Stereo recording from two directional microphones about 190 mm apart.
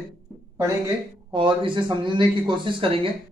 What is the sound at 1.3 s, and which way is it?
A man's voice, 25° right (ahead or behind).